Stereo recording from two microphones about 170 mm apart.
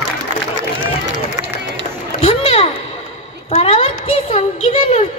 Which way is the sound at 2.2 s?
35° left (ahead or behind).